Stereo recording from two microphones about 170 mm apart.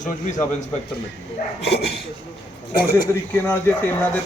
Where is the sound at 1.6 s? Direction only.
75° left (ahead or behind).